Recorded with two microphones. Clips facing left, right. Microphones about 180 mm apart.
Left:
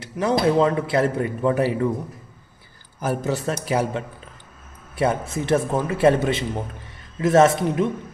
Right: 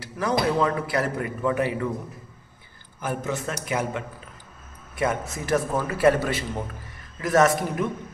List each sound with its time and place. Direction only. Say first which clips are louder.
0.0 s a man's voice: left 4 dB; 25° left (ahead or behind)
3.0 s a man's voice: left 4 dB; 35° left (ahead or behind)